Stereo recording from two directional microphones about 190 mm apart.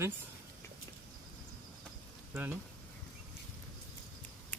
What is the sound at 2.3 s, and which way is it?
Speech, 10° right (ahead or behind).